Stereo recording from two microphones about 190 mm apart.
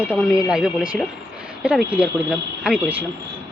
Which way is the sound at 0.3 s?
5° right (ahead or behind).